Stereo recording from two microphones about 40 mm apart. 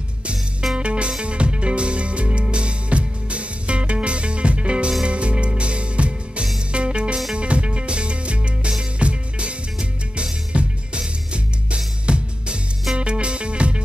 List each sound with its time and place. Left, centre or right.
0.7 s music: right